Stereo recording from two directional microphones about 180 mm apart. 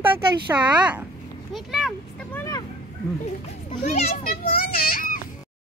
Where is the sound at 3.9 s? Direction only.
40° left (ahead or behind).